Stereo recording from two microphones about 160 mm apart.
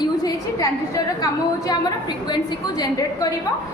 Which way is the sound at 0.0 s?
25° left (ahead or behind).